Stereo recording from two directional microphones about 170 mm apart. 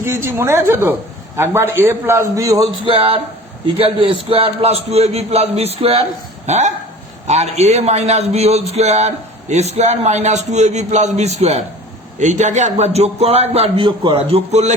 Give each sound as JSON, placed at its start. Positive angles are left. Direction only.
{"t": 0.0, "sound": "a man's voice", "side_deg": -15}
{"t": 2.8, "sound": "a man's voice", "side_deg": -30}